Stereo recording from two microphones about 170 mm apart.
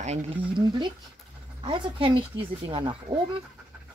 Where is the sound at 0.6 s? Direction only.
25° right (ahead or behind).